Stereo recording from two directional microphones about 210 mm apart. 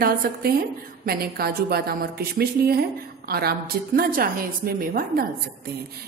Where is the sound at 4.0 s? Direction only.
40° right (ahead or behind).